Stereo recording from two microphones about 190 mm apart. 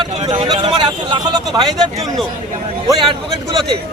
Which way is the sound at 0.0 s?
30° right (ahead or behind).